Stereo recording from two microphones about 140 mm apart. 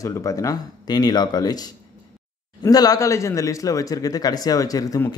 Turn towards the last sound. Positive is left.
turn(degrees=25)  # may be behind; listen again after turning